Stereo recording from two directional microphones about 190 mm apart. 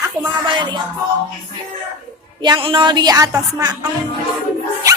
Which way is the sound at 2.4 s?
25° right (ahead or behind).